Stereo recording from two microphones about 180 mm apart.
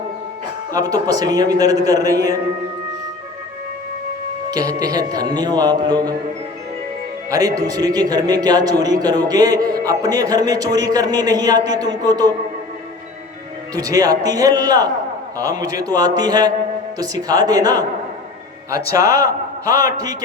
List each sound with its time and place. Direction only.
0.7 s a man's voice: 20° right (ahead or behind)
4.5 s a man's voice: 20° right (ahead or behind)
7.3 s a man's voice: 20° right (ahead or behind)
13.7 s a man's voice: 20° right (ahead or behind)
18.9 s a man's voice: 20° right (ahead or behind)